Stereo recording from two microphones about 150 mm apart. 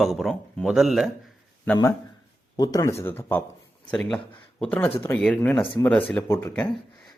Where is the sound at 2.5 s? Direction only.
25° left (ahead or behind).